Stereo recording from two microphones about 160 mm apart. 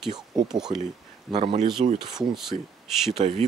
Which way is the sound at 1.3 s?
45° right (ahead or behind).